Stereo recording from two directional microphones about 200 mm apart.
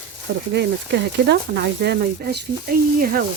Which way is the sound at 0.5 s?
55° right (ahead or behind).